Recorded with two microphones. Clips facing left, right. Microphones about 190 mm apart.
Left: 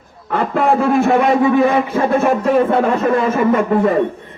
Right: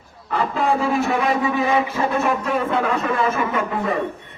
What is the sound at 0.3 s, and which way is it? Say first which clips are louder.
Speech: left 5 dB; 60° left (ahead or behind).